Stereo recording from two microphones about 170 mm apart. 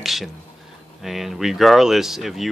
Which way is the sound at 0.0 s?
Centre (ahead or behind).